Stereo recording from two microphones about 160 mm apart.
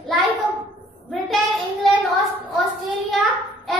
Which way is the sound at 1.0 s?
Centre (ahead or behind).